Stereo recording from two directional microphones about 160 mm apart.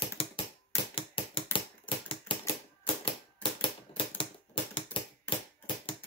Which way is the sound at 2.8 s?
30° left (ahead or behind).